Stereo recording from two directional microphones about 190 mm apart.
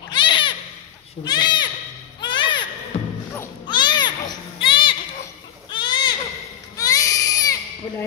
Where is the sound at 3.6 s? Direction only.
25° left (ahead or behind).